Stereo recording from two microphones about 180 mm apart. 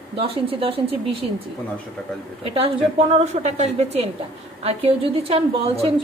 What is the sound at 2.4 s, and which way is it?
A woman's voice, 30° right (ahead or behind).